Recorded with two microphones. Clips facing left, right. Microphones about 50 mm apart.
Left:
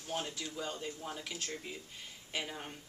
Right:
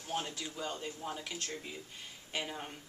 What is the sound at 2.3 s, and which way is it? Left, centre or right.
Speech, centre.